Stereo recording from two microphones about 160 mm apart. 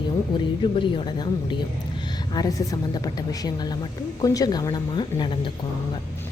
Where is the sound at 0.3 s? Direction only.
30° left (ahead or behind).